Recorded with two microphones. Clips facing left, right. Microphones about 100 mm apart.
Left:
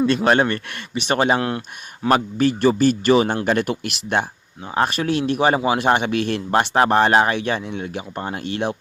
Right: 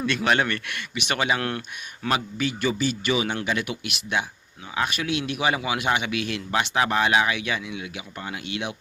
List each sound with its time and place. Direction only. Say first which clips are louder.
0.0 s speech: left 6 dB; 30° left (ahead or behind)
1.4 s speech: left 5 dB; 25° left (ahead or behind)
2.0 s speech: left 8 dB; 45° left (ahead or behind)